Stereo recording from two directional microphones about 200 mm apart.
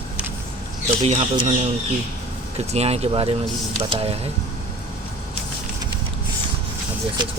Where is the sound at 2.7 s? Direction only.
30° right (ahead or behind).